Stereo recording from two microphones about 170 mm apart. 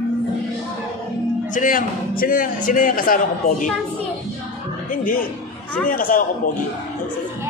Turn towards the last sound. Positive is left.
turn(degrees=55)  # may be behind; listen again after turning